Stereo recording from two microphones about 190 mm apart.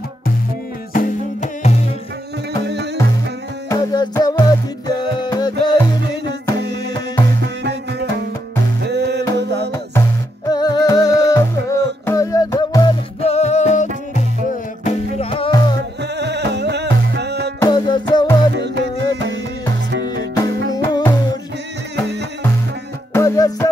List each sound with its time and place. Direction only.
0.9 s music: 40° left (ahead or behind)
2.6 s music: 60° right (ahead or behind)
3.6 s music: 20° left (ahead or behind)
7.4 s music: 60° right (ahead or behind)
10.5 s music: 20° left (ahead or behind)
11.1 s music: 65° right (ahead or behind)
11.3 s music: 15° left (ahead or behind)
13.2 s music: 35° left (ahead or behind)
14.9 s music: 30° left (ahead or behind)
16.0 s music: 65° right (ahead or behind)
17.6 s music: 20° left (ahead or behind)
18.5 s music: 65° right (ahead or behind)
20.7 s music: 20° left (ahead or behind)
23.1 s music: 15° left (ahead or behind)